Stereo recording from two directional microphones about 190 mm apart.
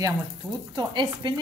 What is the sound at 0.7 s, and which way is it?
Speech, 25° right (ahead or behind).